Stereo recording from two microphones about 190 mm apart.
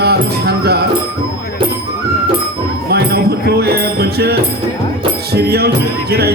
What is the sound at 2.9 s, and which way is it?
Music, 55° right (ahead or behind).